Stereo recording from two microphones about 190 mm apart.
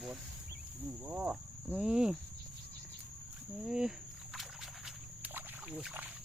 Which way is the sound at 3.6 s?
Centre (ahead or behind).